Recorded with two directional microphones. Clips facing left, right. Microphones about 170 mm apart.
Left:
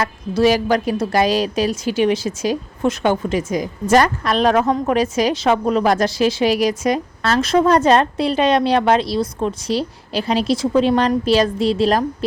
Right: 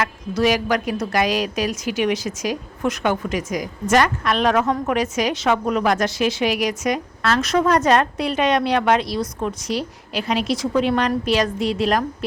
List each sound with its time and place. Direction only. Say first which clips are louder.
0.0 s a woman's voice: left 4 dB; 30° left (ahead or behind)